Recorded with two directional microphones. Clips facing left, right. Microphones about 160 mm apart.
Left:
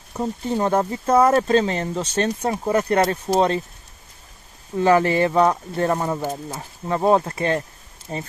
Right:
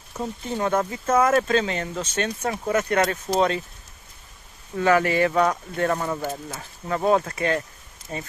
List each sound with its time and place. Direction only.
0.6 s speech: 35° left (ahead or behind)
4.7 s speech: 30° left (ahead or behind)